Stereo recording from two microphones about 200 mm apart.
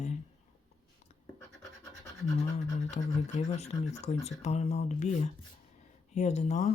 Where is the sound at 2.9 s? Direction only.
35° left (ahead or behind).